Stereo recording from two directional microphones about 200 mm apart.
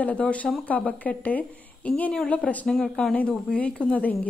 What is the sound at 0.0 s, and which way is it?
A woman's voice, 5° left (ahead or behind).